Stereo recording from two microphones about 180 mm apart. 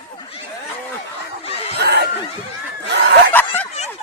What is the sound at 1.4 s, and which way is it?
Snicker, 35° left (ahead or behind).